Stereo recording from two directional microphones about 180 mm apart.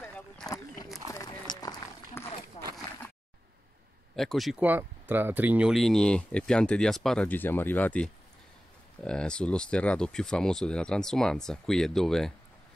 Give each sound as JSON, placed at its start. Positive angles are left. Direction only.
{"t": 1.1, "sound": "run", "side_deg": 20}
{"t": 2.6, "sound": "a sound", "side_deg": 30}
{"t": 4.1, "sound": "speech", "side_deg": 0}